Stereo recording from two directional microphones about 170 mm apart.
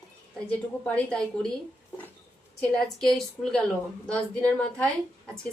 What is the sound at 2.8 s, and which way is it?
A woman's voice, centre (ahead or behind).